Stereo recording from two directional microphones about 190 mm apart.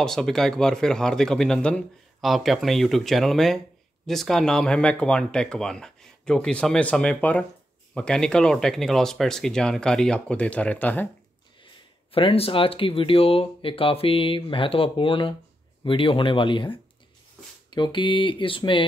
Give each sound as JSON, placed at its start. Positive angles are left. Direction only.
{"t": 0.0, "sound": "speech", "side_deg": 0}
{"t": 11.6, "sound": "speech", "side_deg": 30}